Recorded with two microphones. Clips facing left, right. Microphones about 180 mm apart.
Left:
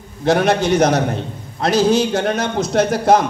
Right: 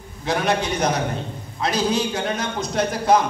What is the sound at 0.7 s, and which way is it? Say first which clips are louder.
Speech: left 8 dB; 45° left (ahead or behind).